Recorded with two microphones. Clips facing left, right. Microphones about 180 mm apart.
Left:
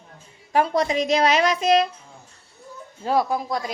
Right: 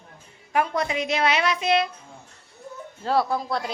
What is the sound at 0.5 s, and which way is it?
A woman's voice, 35° left (ahead or behind).